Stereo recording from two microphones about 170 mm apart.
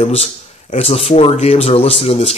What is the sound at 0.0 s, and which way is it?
Speech, 35° left (ahead or behind).